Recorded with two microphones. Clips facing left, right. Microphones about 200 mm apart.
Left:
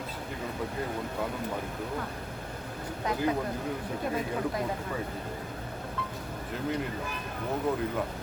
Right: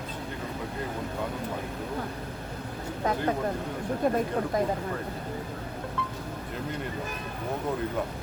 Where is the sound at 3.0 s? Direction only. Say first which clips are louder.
Right 2 dB; 50° right (ahead or behind).